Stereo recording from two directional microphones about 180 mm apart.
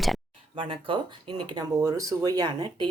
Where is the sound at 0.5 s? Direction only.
30° right (ahead or behind).